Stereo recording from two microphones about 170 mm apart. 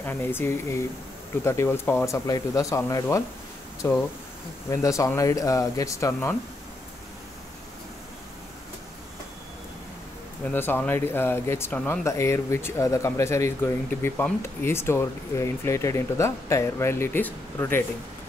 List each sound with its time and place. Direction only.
0.0 s speech: 15° left (ahead or behind)
10.5 s speech: 10° left (ahead or behind)